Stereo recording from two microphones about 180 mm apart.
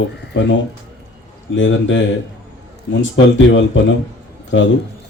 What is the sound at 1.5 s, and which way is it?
Speech, 90° left.